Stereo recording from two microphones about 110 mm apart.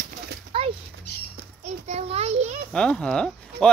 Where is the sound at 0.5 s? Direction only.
55° right (ahead or behind).